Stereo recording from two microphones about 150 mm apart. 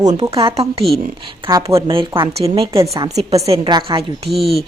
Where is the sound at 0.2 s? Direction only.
40° right (ahead or behind).